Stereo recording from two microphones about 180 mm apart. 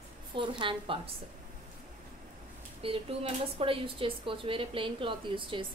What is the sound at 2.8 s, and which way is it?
Speech, 30° right (ahead or behind).